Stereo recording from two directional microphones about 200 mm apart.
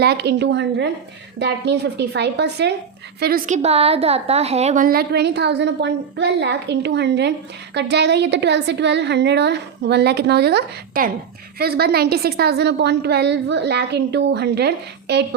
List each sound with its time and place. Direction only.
0.0 s a woman's voice: 55° right (ahead or behind)